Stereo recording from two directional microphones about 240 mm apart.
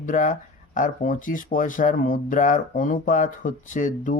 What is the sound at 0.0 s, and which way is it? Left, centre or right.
Speech, left.